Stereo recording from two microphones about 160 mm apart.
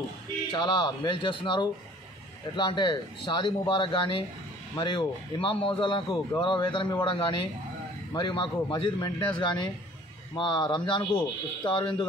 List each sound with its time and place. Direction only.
0.5 s speech: 30° left (ahead or behind)